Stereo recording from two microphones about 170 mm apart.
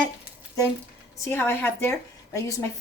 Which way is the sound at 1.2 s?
15° left (ahead or behind).